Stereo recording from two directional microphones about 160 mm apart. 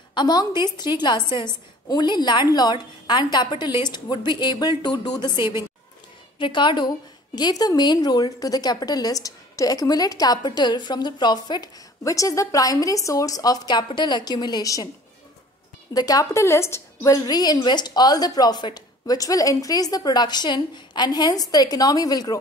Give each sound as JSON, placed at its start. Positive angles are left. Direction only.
{"t": 0.1, "sound": "a woman's voice", "side_deg": 25}
{"t": 15.9, "sound": "a woman's voice", "side_deg": 25}